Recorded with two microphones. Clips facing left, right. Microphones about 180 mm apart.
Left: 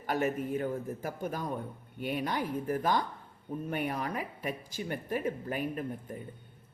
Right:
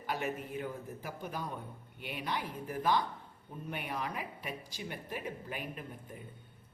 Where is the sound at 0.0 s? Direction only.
45° left (ahead or behind).